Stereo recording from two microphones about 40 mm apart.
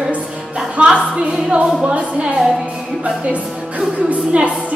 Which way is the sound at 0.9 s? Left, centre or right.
Right.